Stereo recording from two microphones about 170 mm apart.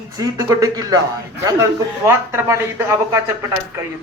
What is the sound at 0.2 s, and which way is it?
Speech, 20° right (ahead or behind).